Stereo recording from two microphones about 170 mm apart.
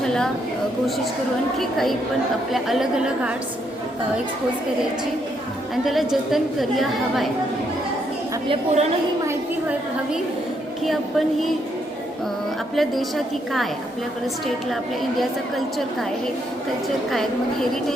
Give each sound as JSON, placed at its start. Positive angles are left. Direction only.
{"t": 0.0, "sound": "a sound", "side_deg": 5}
{"t": 1.5, "sound": "a woman's voice", "side_deg": 0}
{"t": 5.7, "sound": "a woman's voice", "side_deg": 0}
{"t": 8.4, "sound": "a woman's voice", "side_deg": -40}
{"t": 9.2, "sound": "a sound", "side_deg": -10}
{"t": 12.7, "sound": "a woman's voice", "side_deg": 0}
{"t": 15.2, "sound": "a woman's voice", "side_deg": 0}
{"t": 17.1, "sound": "a woman's voice", "side_deg": 0}